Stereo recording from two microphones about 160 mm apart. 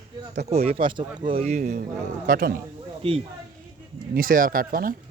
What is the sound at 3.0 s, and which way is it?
Speech, 35° right (ahead or behind).